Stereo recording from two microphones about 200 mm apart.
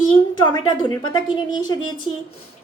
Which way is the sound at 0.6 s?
20° left (ahead or behind).